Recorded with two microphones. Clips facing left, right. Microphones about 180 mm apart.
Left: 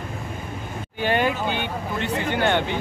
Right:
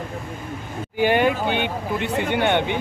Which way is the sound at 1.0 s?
15° right (ahead or behind).